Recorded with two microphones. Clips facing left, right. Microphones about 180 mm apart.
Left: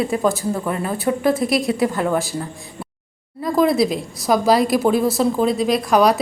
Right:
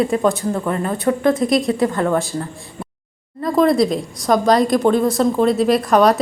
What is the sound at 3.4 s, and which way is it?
A woman's voice, centre (ahead or behind).